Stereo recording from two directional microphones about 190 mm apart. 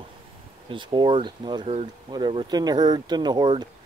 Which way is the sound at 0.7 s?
25° right (ahead or behind).